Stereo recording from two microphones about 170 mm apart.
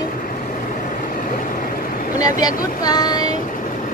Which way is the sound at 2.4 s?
25° left (ahead or behind).